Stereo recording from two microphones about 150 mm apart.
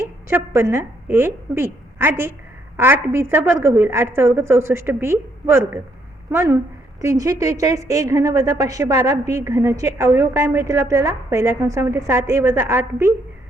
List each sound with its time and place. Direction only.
0.0 s a woman's voice: 15° right (ahead or behind)